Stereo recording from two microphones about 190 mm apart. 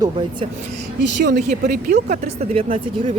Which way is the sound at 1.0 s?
65° right (ahead or behind).